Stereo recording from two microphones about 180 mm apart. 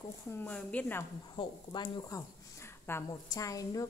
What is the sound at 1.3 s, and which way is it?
Speech, 25° left (ahead or behind).